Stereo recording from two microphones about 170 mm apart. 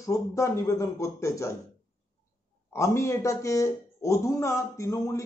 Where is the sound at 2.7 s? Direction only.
15° left (ahead or behind).